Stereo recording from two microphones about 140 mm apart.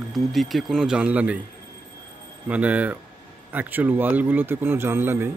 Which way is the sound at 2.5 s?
10° right (ahead or behind).